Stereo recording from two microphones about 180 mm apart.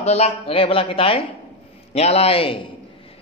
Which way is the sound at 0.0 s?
35° left (ahead or behind).